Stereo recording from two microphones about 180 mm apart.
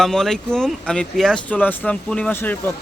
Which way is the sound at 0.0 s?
Centre (ahead or behind).